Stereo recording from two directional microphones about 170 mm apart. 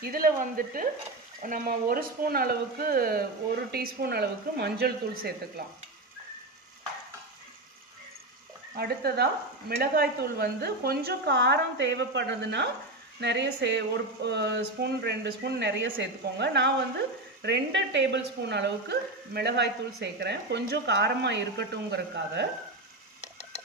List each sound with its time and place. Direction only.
0.0 s speech: 55° right (ahead or behind)
8.7 s speech: 65° right (ahead or behind); by 22.5 s 90° right